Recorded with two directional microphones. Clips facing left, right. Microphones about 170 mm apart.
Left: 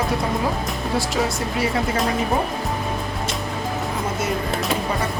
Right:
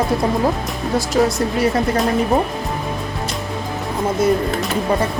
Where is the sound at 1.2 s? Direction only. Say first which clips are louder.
Right 8 dB; 45° right (ahead or behind).